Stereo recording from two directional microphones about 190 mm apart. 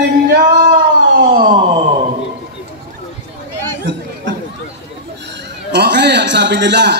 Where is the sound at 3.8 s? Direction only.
70° right (ahead or behind).